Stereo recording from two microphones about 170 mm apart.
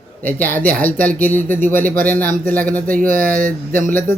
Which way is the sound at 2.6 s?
55° right (ahead or behind).